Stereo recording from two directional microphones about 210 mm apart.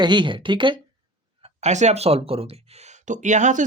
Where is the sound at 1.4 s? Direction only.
35° right (ahead or behind).